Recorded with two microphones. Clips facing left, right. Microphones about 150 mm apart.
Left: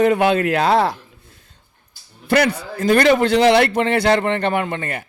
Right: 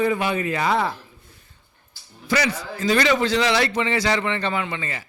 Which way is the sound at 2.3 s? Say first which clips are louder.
Left 6 dB; 55° left (ahead or behind).